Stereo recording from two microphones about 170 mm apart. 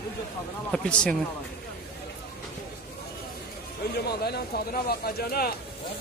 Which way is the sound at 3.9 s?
70° left (ahead or behind).